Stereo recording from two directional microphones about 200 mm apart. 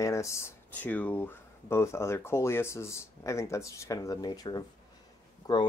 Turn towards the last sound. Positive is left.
turn(degrees=20)  # may be behind; listen again after turning